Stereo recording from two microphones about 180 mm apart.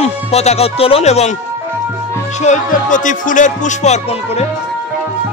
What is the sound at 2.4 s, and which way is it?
Speech, 45° left (ahead or behind).